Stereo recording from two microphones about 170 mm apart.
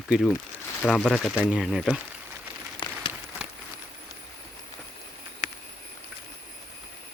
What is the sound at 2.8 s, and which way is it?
Applause, 25° left (ahead or behind).